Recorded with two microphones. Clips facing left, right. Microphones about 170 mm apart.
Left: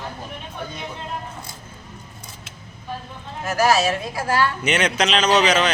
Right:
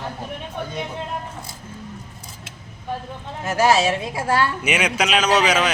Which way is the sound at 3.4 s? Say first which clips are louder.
Right 1 dB; 25° right (ahead or behind).